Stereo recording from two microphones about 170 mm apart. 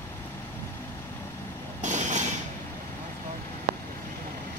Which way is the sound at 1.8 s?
45° right (ahead or behind).